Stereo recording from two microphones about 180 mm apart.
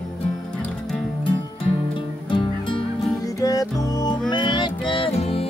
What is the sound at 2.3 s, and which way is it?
Music, 25° left (ahead or behind).